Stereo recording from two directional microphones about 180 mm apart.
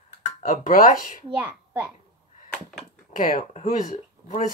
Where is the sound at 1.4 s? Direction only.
10° right (ahead or behind).